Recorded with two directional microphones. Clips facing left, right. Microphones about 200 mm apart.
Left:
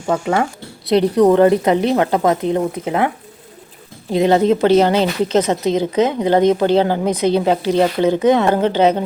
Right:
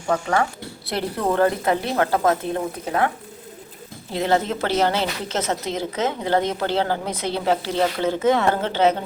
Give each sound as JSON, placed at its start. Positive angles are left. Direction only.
{"t": 0.9, "sound": "a woman's voice", "side_deg": 20}
{"t": 4.1, "sound": "a woman's voice", "side_deg": 15}